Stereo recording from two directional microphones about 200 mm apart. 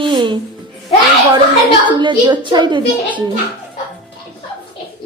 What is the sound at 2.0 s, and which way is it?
Speech, 25° right (ahead or behind).